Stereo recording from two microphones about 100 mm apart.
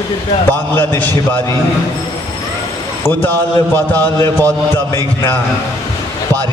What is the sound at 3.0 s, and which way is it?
Speech, 20° left (ahead or behind).